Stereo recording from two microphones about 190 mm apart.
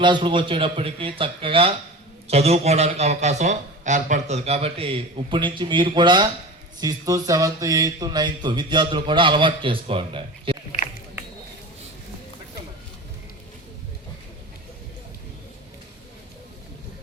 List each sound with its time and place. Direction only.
0.0 s a man's voice: 25° right (ahead or behind)